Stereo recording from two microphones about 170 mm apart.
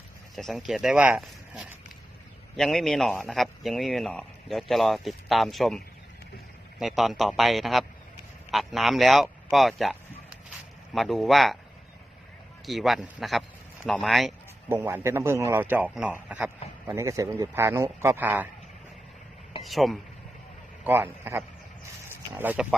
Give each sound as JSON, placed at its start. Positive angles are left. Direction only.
{"t": 0.3, "sound": "a man's voice", "side_deg": 0}
{"t": 12.6, "sound": "a man's voice", "side_deg": 0}
{"t": 14.7, "sound": "a man's voice", "side_deg": -10}
{"t": 19.6, "sound": "a man's voice", "side_deg": 0}
{"t": 20.8, "sound": "a man's voice", "side_deg": -10}